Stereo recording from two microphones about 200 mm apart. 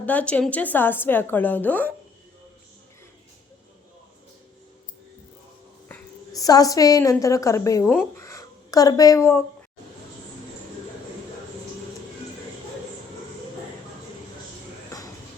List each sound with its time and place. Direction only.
0.0 s a woman's voice: 5° left (ahead or behind)
5.9 s a woman's voice: 15° left (ahead or behind)
14.8 s a sound: 15° left (ahead or behind)